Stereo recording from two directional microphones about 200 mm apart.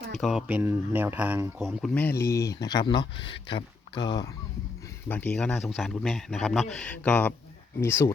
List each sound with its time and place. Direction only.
0.1 s speech: centre (ahead or behind); by 4.3 s 20° left (ahead or behind)
5.0 s a man's voice: 10° left (ahead or behind)